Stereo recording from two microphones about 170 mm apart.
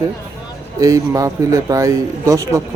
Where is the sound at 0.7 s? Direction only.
20° right (ahead or behind).